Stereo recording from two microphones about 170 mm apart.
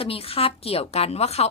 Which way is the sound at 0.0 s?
35° left (ahead or behind).